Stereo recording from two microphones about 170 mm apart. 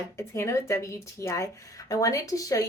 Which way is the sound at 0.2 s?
15° left (ahead or behind).